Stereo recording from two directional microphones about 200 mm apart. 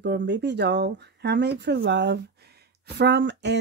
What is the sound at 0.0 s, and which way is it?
Speech, 55° right (ahead or behind).